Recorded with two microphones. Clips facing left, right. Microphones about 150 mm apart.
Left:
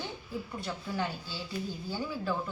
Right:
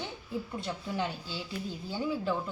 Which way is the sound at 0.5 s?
20° right (ahead or behind).